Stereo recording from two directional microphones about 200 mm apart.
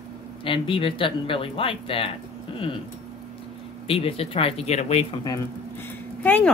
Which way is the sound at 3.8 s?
30° left (ahead or behind).